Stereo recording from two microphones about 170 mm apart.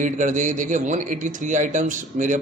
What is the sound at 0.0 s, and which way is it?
A man's voice, 50° right (ahead or behind).